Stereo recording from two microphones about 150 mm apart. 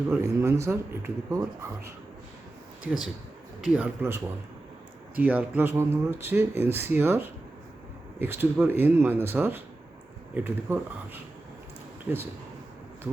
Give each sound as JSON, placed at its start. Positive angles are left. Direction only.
{"t": 0.2, "sound": "speech", "side_deg": -20}
{"t": 3.6, "sound": "speech", "side_deg": -10}